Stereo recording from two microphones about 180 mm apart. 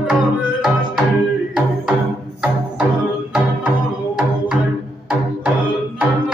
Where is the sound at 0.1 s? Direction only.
5° right (ahead or behind).